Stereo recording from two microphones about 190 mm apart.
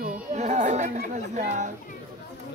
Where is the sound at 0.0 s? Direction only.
40° right (ahead or behind).